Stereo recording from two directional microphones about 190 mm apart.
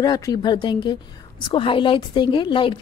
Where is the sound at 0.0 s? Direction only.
20° left (ahead or behind).